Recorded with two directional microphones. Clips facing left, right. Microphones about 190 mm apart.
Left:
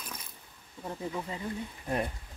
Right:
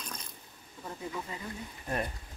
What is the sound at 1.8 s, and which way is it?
Speech, 15° left (ahead or behind).